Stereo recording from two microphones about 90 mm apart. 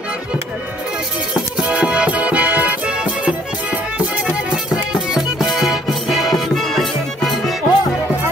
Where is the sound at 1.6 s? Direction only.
10° right (ahead or behind).